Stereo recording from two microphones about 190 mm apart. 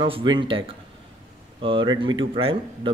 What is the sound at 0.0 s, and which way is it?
Speech, 25° right (ahead or behind).